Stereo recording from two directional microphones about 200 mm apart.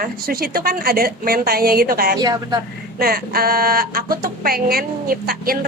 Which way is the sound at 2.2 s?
20° right (ahead or behind).